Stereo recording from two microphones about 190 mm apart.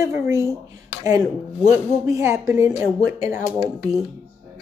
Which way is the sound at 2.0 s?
15° right (ahead or behind).